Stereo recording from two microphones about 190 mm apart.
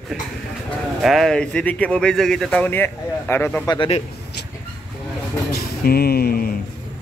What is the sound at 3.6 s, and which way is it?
Speech, 25° left (ahead or behind).